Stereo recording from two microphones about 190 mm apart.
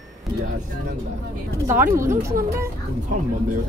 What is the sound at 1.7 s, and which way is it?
Speech, 15° right (ahead or behind).